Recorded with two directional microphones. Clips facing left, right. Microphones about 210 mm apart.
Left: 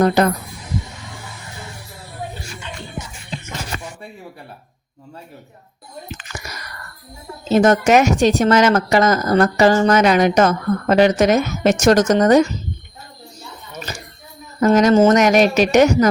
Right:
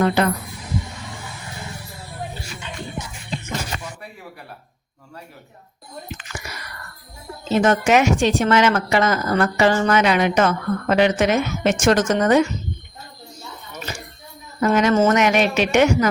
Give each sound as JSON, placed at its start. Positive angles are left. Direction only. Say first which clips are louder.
{"t": 0.0, "sound": "speech", "louder": "left 4 dB", "side_deg": 40}
{"t": 6.4, "sound": "a sound", "louder": "left 1 dB", "side_deg": 40}
{"t": 7.5, "sound": "speech", "louder": "left 3 dB", "side_deg": 40}
{"t": 14.6, "sound": "speech", "louder": "left 4 dB", "side_deg": 40}